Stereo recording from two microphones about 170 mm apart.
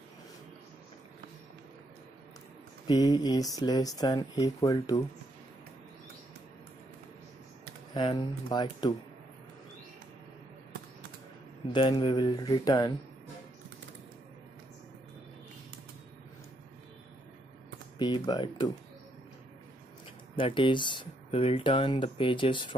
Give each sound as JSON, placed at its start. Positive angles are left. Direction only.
{"t": 2.9, "sound": "speech", "side_deg": 20}
{"t": 7.9, "sound": "speech", "side_deg": 25}
{"t": 11.7, "sound": "speech", "side_deg": 25}
{"t": 17.9, "sound": "speech", "side_deg": 25}
{"t": 20.3, "sound": "speech", "side_deg": 30}